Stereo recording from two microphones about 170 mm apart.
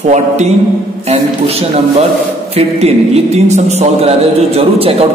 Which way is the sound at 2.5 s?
40° right (ahead or behind).